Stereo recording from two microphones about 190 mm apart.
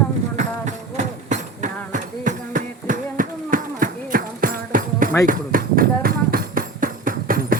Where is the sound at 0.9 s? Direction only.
40° right (ahead or behind).